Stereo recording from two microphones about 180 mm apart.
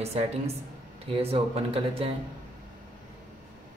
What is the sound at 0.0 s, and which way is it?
Speech, 35° right (ahead or behind).